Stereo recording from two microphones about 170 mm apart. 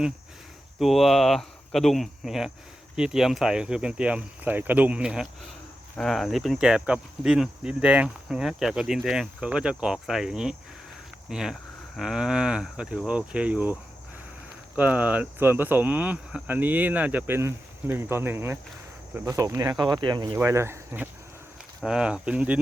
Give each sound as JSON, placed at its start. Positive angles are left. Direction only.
{"t": 0.8, "sound": "speech", "side_deg": 0}
{"t": 14.8, "sound": "speech", "side_deg": -10}